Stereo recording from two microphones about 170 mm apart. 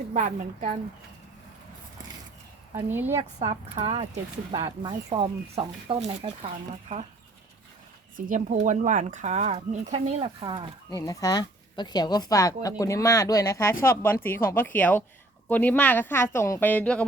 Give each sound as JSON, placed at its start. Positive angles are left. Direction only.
{"t": 0.1, "sound": "speech", "side_deg": -45}
{"t": 2.9, "sound": "a woman's voice", "side_deg": -15}
{"t": 3.2, "sound": "speech", "side_deg": -40}
{"t": 5.0, "sound": "speech", "side_deg": -35}
{"t": 8.3, "sound": "speech", "side_deg": -50}
{"t": 10.9, "sound": "speech", "side_deg": 20}